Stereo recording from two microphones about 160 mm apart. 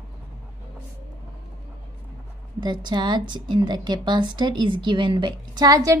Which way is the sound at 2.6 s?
25° right (ahead or behind).